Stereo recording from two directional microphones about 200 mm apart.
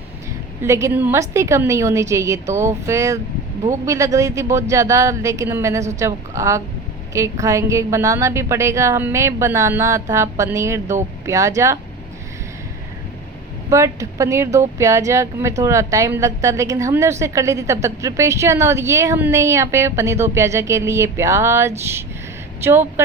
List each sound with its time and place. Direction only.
0.6 s a woman's voice: 15° right (ahead or behind)
13.7 s a woman's voice: 15° right (ahead or behind)